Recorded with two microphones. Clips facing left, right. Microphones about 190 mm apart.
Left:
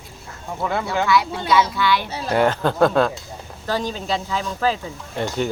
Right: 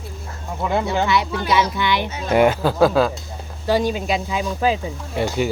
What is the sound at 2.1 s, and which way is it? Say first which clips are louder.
Speech: right 1 dB; 35° left (ahead or behind).